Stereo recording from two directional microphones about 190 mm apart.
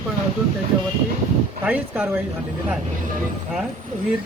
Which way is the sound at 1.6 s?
10° right (ahead or behind).